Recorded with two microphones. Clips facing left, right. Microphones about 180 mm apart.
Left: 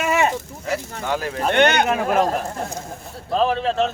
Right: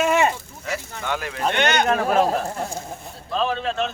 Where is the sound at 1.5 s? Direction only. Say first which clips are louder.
Left 5 dB; 55° left (ahead or behind).